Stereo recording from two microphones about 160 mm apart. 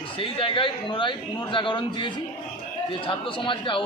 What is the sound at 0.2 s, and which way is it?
Speech, 35° left (ahead or behind).